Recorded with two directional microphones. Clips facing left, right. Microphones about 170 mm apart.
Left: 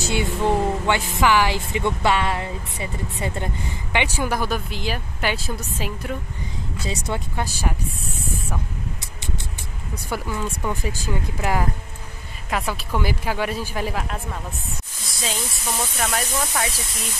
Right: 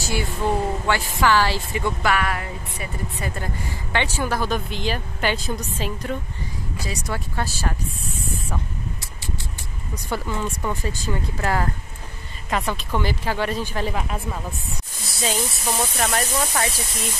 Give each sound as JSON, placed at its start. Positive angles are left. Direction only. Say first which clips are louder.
{"t": 0.0, "sound": "speech", "louder": "left 2 dB", "side_deg": 20}
{"t": 6.8, "sound": "speech", "louder": "left 2 dB", "side_deg": 25}
{"t": 10.0, "sound": "speech", "louder": "right 1 dB", "side_deg": 10}
{"t": 14.1, "sound": "speech", "louder": "right 2 dB", "side_deg": -5}